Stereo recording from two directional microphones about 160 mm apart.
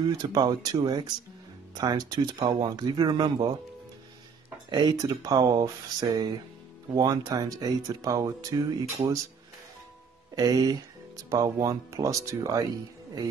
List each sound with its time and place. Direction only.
0.0 s speech: 25° right (ahead or behind)
4.6 s speech: 25° right (ahead or behind)
10.3 s speech: 20° right (ahead or behind)